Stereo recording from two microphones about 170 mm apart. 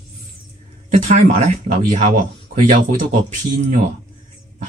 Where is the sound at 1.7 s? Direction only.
50° right (ahead or behind).